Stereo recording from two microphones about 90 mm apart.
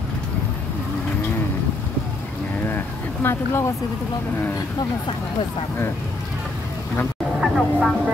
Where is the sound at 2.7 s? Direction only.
25° left (ahead or behind).